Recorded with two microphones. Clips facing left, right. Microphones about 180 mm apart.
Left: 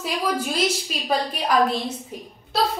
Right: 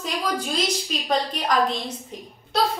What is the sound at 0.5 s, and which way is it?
A woman's voice, 5° left (ahead or behind).